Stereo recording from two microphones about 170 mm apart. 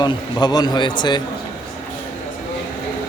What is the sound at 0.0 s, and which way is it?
A man's voice, 25° left (ahead or behind).